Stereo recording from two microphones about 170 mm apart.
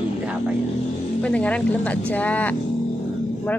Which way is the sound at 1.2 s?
5° left (ahead or behind).